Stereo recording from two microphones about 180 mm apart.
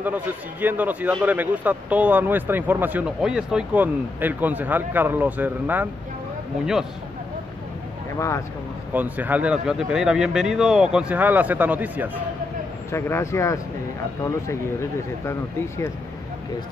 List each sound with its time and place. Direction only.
0.0 s a man's voice: 10° right (ahead or behind)
8.9 s a man's voice: 10° right (ahead or behind)
12.9 s speech: 15° left (ahead or behind)